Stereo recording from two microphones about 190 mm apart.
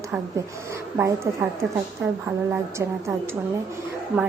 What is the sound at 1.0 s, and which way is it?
Speech, 15° right (ahead or behind).